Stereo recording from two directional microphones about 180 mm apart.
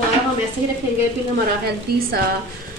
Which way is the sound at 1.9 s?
60° right (ahead or behind).